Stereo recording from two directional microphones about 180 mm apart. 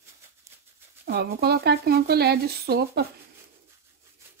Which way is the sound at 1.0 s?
60° right (ahead or behind).